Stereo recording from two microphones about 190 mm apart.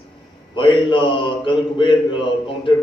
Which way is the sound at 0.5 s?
25° left (ahead or behind).